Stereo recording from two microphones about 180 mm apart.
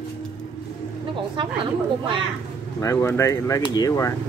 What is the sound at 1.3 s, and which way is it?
Speech, 25° right (ahead or behind).